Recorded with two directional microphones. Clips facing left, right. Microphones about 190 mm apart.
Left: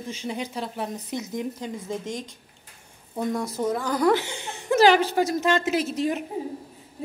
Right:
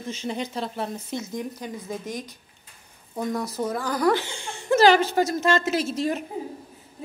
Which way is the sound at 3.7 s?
20° left (ahead or behind).